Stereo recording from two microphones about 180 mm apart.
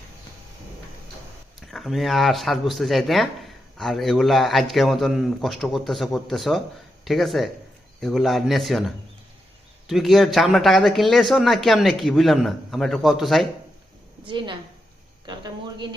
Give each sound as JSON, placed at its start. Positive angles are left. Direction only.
{"t": 1.7, "sound": "speech", "side_deg": 0}
{"t": 9.8, "sound": "speech", "side_deg": 0}
{"t": 14.3, "sound": "speech", "side_deg": -25}